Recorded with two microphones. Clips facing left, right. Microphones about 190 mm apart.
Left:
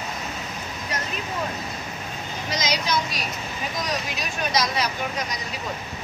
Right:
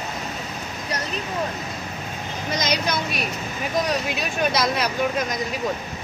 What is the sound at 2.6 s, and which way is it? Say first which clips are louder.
Speech: even; 55° right (ahead or behind).